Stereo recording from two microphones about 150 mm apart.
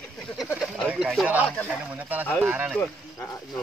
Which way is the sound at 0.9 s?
5° right (ahead or behind).